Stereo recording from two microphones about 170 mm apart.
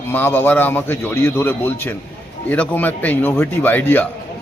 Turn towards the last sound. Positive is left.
turn(degrees=10)  # may be behind; listen again after turning